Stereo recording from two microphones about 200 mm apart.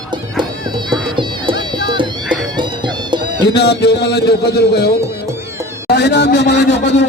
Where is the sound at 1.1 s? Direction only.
25° right (ahead or behind).